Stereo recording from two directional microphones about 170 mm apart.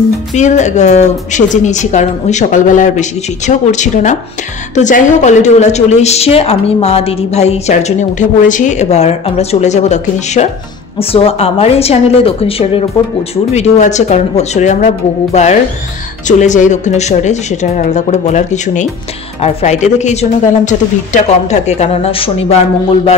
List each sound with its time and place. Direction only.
0.3 s a woman's voice: 45° left (ahead or behind)
16.3 s a woman's voice: 45° left (ahead or behind)